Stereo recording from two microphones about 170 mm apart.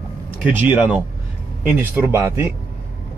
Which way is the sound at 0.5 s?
10° right (ahead or behind).